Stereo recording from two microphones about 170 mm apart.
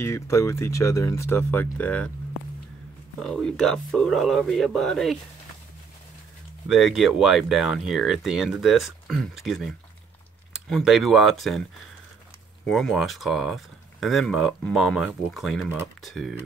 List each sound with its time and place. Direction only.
0.0 s speech: 15° left (ahead or behind)
3.2 s speech: centre (ahead or behind)
6.7 s speech: centre (ahead or behind)
12.6 s speech: centre (ahead or behind)